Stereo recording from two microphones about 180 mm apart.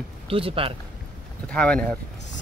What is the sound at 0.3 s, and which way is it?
Speech, 30° right (ahead or behind).